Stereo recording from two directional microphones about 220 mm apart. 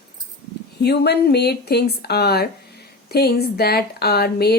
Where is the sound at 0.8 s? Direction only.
50° left (ahead or behind).